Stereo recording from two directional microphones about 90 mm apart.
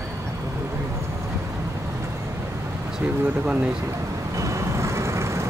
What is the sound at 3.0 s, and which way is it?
Vehicle, 15° right (ahead or behind).